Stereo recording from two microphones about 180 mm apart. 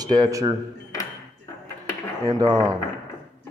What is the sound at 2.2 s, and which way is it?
Speech, 20° right (ahead or behind).